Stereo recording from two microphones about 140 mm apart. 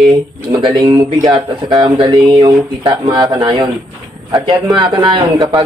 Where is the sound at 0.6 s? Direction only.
30° right (ahead or behind).